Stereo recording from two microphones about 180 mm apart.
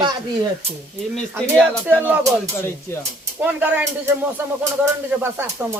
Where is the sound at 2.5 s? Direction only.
15° left (ahead or behind).